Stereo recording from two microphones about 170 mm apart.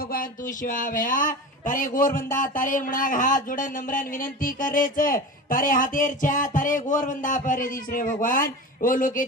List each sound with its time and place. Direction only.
0.1 s speech: 55° left (ahead or behind)